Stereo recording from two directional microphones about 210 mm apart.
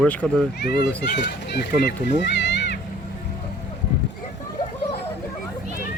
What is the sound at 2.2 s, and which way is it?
Music, 55° left (ahead or behind).